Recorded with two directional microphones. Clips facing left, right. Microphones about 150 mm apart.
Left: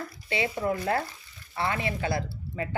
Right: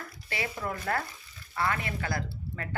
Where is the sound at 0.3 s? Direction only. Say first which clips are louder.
Left 6 dB; 20° left (ahead or behind).